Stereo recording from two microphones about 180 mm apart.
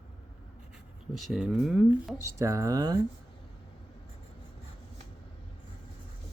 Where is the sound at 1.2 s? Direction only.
5° right (ahead or behind).